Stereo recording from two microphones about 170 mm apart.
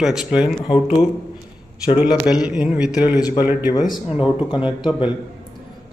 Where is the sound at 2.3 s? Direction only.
5° right (ahead or behind).